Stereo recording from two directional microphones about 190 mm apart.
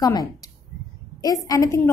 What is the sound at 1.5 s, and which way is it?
Speech, 15° left (ahead or behind).